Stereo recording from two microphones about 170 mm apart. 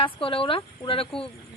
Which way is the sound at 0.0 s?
30° left (ahead or behind).